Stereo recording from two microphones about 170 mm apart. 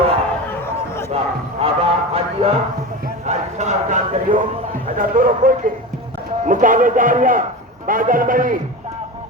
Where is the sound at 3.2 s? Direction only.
40° right (ahead or behind).